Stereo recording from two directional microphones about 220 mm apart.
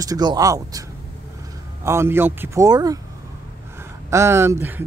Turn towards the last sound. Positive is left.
turn(degrees=-10)  # may be behind; listen again after turning